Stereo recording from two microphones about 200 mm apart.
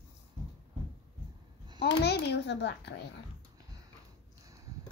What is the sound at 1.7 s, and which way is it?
A child's voice, 55° left (ahead or behind).